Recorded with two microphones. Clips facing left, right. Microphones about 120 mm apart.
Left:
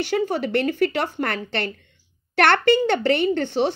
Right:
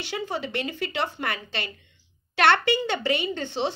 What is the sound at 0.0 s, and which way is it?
A woman's voice, 50° left (ahead or behind).